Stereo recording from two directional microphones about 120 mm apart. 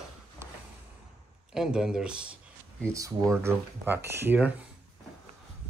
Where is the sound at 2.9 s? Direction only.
25° right (ahead or behind).